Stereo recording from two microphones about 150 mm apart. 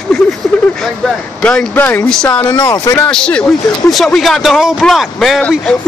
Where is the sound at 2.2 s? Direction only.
20° left (ahead or behind).